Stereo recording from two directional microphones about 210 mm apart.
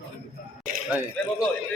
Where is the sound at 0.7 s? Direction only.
40° right (ahead or behind).